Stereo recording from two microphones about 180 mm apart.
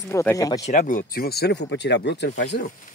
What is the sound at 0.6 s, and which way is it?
Speech, 45° left (ahead or behind).